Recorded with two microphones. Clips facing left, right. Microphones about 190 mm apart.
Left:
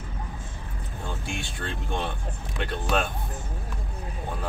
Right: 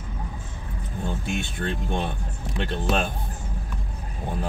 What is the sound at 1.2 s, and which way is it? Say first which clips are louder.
Speech: right 5 dB; 20° right (ahead or behind).